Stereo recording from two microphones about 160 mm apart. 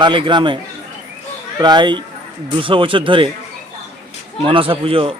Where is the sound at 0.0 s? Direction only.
30° right (ahead or behind).